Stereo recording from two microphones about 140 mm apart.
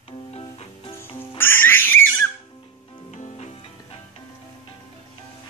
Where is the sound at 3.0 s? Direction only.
55° left (ahead or behind).